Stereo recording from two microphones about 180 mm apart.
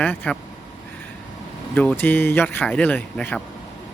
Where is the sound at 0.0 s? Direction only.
10° left (ahead or behind).